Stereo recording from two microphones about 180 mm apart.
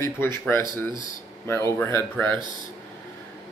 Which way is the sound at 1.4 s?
15° left (ahead or behind).